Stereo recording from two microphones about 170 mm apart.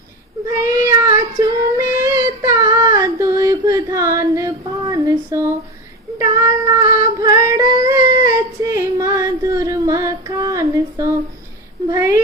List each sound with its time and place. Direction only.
0.4 s child singing: 15° right (ahead or behind)
6.7 s female singing: 20° right (ahead or behind)
11.9 s a sound: 20° right (ahead or behind)